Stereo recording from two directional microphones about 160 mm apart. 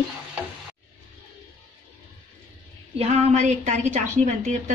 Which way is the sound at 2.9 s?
40° right (ahead or behind).